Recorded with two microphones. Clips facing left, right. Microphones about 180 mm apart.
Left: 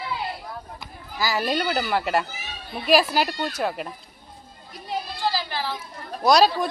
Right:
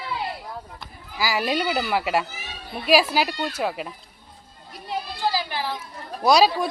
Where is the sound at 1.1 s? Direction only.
10° right (ahead or behind).